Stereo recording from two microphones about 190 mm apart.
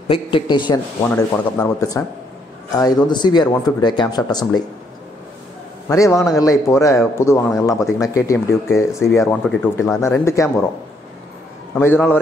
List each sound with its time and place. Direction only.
0.1 s speech: 25° left (ahead or behind)
3.1 s speech: 20° left (ahead or behind)
5.9 s speech: 15° left (ahead or behind)
11.7 s speech: 10° left (ahead or behind)